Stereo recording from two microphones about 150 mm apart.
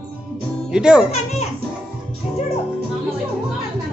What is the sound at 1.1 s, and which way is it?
Speech, 45° left (ahead or behind).